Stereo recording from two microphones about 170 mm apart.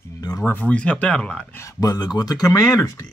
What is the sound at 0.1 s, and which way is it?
Speech, 20° left (ahead or behind).